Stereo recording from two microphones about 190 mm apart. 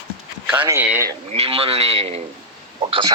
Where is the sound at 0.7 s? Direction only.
15° right (ahead or behind).